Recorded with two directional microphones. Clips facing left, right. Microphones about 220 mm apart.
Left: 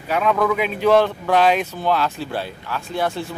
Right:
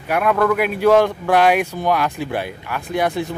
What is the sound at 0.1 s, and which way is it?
Speech, 5° right (ahead or behind).